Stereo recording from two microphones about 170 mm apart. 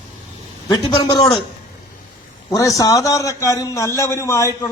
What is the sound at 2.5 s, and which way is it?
A man's voice, 20° left (ahead or behind).